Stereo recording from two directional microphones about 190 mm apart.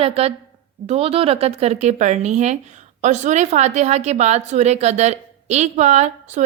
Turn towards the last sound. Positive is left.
turn(degrees=-35)  # may be behind; listen again after turning